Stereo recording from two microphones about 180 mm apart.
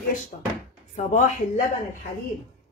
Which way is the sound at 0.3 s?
45° left (ahead or behind).